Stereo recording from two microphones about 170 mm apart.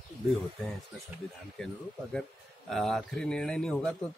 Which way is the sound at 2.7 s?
Centre (ahead or behind).